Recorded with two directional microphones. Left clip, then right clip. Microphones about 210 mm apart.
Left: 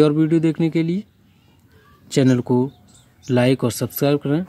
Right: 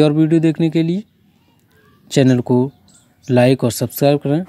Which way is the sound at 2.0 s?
20° right (ahead or behind).